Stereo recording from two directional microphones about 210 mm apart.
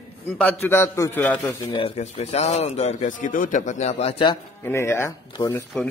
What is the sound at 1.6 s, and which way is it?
Speech, 25° left (ahead or behind).